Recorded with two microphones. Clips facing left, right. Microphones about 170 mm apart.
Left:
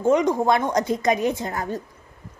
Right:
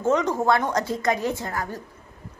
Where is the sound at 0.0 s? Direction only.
15° left (ahead or behind).